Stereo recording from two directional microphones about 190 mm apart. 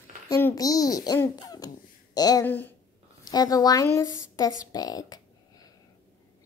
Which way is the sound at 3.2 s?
20° left (ahead or behind).